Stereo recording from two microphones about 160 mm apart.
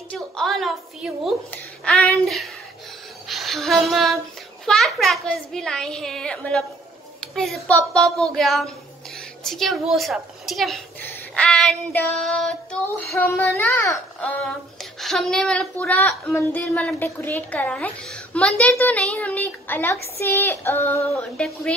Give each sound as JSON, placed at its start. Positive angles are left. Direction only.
{"t": 0.1, "sound": "a woman's voice", "side_deg": 5}
{"t": 3.3, "sound": "a sound", "side_deg": 0}
{"t": 4.6, "sound": "a woman's voice", "side_deg": 0}
{"t": 11.1, "sound": "child singing", "side_deg": 5}
{"t": 13.1, "sound": "a woman's voice", "side_deg": 15}
{"t": 14.8, "sound": "a woman's voice", "side_deg": 0}